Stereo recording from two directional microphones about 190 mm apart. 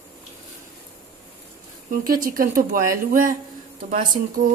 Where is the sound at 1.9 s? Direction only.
45° right (ahead or behind).